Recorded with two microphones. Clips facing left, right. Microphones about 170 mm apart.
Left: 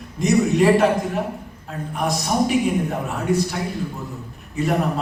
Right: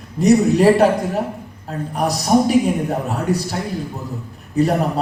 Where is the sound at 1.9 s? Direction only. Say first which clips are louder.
Right 6 dB; 35° right (ahead or behind).